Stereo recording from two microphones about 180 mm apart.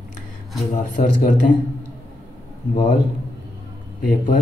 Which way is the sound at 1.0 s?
40° left (ahead or behind).